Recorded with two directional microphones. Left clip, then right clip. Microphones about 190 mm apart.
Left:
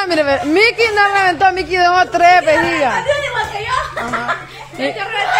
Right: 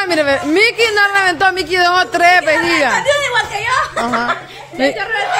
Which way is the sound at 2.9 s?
35° right (ahead or behind).